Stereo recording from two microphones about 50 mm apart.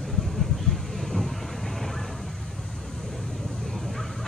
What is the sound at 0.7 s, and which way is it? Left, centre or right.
Vehicle, centre.